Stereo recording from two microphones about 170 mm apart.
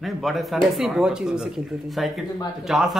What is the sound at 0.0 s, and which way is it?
A man's voice, centre (ahead or behind).